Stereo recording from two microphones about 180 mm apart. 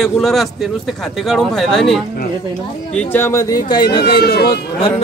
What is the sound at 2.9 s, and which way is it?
Speech, 10° left (ahead or behind).